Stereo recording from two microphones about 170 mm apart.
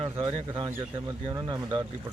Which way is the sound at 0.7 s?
15° right (ahead or behind).